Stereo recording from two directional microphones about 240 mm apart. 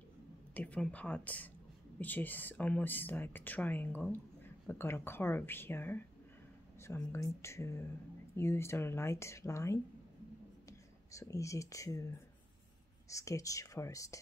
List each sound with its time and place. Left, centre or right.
0.6 s speech: centre
11.1 s speech: centre
13.1 s speech: centre